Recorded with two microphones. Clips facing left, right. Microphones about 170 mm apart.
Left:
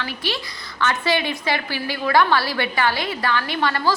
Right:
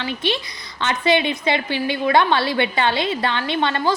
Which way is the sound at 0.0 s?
20° right (ahead or behind).